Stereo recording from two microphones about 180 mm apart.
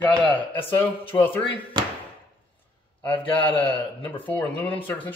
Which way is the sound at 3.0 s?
30° left (ahead or behind).